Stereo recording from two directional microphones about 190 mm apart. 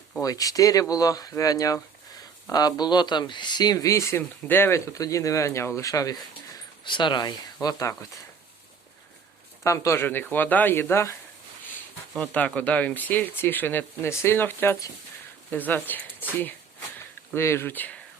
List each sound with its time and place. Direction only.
0.2 s speech: 20° left (ahead or behind)
9.6 s speech: 15° left (ahead or behind)